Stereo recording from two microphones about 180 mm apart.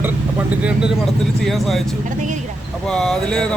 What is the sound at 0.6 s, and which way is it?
Speech, 5° right (ahead or behind).